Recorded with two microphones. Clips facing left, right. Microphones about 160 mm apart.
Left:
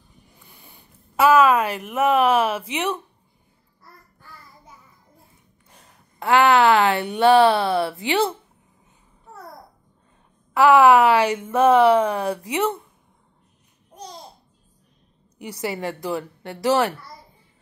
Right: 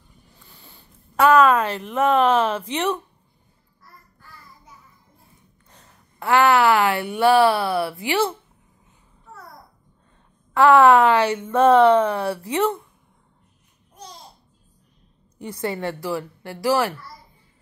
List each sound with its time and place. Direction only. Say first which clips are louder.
0.5 s speech: right 1 dB; 15° left (ahead or behind)
5.7 s speech: even; 15° left (ahead or behind)
10.5 s a woman's voice: even; 5° left (ahead or behind)
15.4 s a woman's voice: right 1 dB; 10° left (ahead or behind)